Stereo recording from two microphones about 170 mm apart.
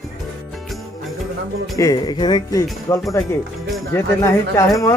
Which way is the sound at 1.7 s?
20° left (ahead or behind).